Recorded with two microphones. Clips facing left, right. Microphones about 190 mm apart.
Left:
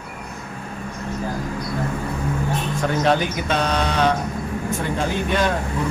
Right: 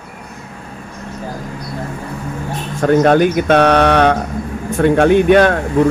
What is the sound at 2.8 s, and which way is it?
Speech, 50° right (ahead or behind).